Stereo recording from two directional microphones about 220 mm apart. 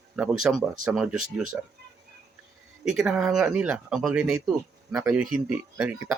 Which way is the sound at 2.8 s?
Centre (ahead or behind).